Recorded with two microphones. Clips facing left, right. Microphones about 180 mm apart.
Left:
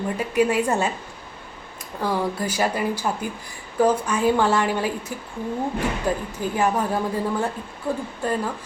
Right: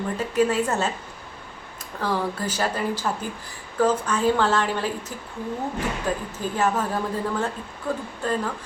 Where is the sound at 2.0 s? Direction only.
10° left (ahead or behind).